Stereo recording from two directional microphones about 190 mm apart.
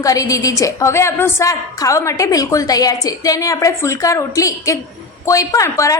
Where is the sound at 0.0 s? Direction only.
20° left (ahead or behind).